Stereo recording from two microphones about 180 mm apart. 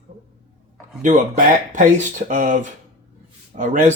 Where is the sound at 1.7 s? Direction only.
45° right (ahead or behind).